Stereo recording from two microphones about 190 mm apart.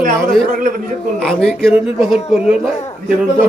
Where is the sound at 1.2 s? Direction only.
5° left (ahead or behind).